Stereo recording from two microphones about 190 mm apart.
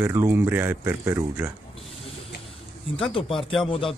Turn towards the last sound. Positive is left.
turn(degrees=30)  # may be behind; listen again after turning